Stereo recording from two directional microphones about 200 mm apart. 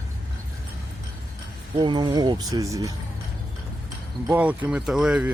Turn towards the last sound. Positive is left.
turn(degrees=-5)  # may be behind; listen again after turning